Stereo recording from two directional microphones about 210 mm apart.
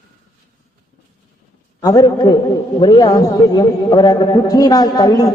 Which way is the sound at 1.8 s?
15° left (ahead or behind).